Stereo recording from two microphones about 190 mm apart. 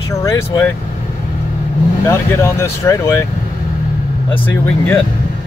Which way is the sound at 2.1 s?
15° left (ahead or behind).